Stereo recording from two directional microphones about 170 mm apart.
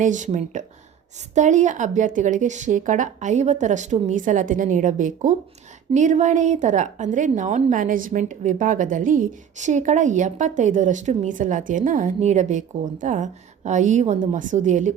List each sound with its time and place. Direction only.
0.0 s a woman's voice: 45° right (ahead or behind)